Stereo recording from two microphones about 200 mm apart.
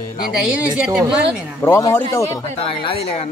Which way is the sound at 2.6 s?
25° left (ahead or behind).